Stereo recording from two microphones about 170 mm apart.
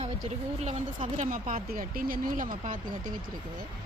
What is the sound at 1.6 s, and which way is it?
Speech, 60° right (ahead or behind).